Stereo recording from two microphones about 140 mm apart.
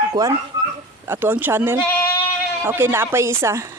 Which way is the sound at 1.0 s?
15° right (ahead or behind).